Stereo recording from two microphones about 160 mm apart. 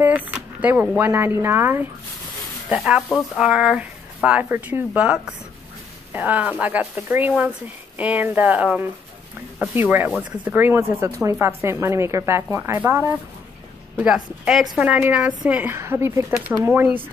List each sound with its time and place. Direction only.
0.0 s speech: 10° right (ahead or behind)